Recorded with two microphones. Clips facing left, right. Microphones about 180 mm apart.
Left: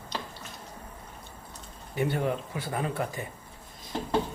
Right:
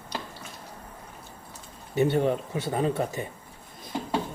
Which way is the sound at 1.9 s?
25° right (ahead or behind).